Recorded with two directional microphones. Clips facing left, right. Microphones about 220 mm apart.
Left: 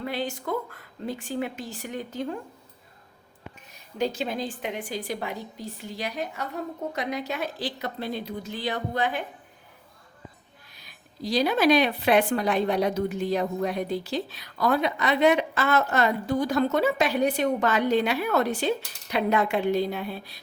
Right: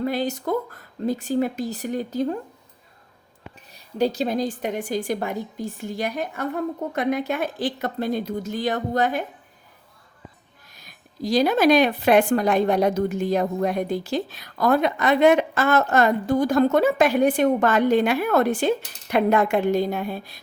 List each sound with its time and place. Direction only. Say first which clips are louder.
0.0 s speech: right 6 dB; 40° right (ahead or behind)
3.7 s speech: right 5 dB; 35° right (ahead or behind)
10.7 s speech: right 2 dB; 45° right (ahead or behind)